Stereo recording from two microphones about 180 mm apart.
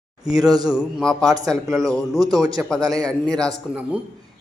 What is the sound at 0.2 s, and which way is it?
Speech, 20° right (ahead or behind).